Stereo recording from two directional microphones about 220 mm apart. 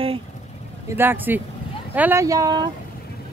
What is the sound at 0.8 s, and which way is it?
Speech, 10° right (ahead or behind).